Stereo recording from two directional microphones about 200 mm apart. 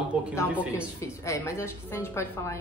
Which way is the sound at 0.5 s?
5° right (ahead or behind).